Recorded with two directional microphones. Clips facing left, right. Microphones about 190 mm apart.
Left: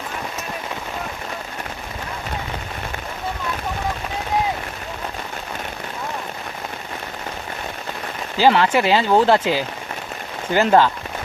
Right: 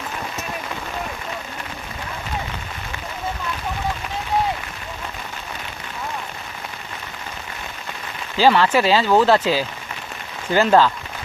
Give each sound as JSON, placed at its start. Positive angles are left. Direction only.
{"t": 8.4, "sound": "speech", "side_deg": 15}